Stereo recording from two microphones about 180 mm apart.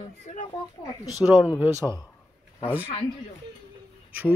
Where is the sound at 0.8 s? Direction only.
20° left (ahead or behind).